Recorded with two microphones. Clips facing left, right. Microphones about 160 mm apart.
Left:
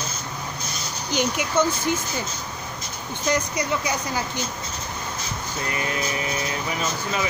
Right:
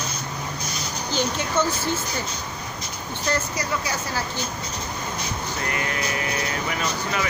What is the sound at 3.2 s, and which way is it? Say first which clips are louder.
Speech: left 2 dB; 15° left (ahead or behind).